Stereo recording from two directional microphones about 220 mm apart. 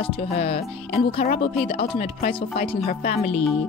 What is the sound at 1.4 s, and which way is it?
Speech, 25° left (ahead or behind).